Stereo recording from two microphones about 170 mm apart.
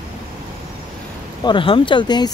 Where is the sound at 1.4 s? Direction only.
30° left (ahead or behind).